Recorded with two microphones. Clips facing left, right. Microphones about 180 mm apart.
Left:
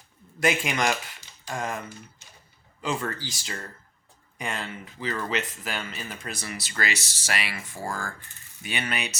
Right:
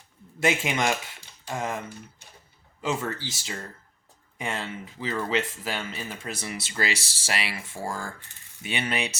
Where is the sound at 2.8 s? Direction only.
25° right (ahead or behind).